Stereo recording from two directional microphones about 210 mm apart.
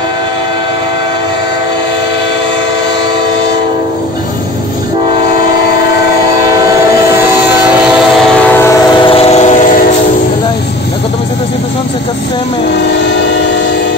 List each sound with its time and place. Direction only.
8.4 s train: 10° left (ahead or behind)
8.9 s train: 25° left (ahead or behind)
12.7 s train: 60° left (ahead or behind)